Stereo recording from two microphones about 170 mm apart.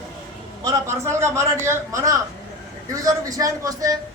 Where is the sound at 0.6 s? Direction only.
20° right (ahead or behind).